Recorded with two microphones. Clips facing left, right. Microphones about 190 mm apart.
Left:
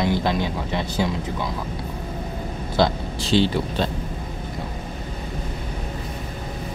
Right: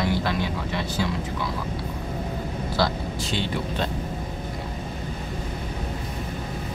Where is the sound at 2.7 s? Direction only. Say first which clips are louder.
Left 5 dB; 25° left (ahead or behind).